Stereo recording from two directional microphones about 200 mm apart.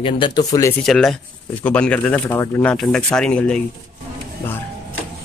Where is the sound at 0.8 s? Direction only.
Centre (ahead or behind).